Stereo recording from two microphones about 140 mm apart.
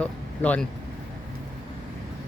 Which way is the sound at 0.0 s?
10° left (ahead or behind).